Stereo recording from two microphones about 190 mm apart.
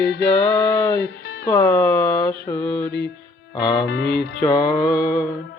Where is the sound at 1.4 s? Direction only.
10° left (ahead or behind).